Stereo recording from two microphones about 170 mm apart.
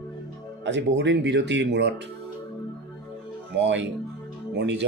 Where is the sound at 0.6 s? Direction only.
90° right.